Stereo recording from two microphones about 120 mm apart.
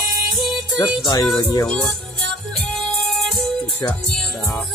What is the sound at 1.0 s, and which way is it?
Speech, 30° left (ahead or behind).